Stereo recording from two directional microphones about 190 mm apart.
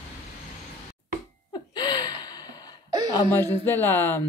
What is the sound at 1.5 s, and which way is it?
Gasp, 20° left (ahead or behind).